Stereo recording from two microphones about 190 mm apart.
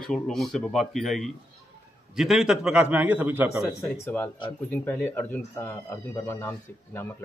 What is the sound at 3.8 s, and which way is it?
Speech, 15° left (ahead or behind).